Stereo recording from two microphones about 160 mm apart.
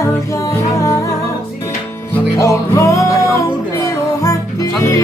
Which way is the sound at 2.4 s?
20° left (ahead or behind).